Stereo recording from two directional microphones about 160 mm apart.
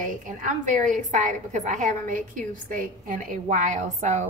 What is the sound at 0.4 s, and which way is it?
A woman's voice, 55° right (ahead or behind).